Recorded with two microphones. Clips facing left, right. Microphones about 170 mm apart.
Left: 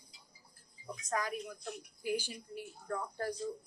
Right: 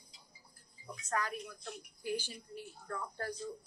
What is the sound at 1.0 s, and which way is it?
Speech, 10° left (ahead or behind).